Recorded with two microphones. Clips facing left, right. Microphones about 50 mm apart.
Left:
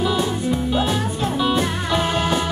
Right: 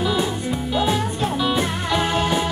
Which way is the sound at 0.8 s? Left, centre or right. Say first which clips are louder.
Right 1 dB; centre.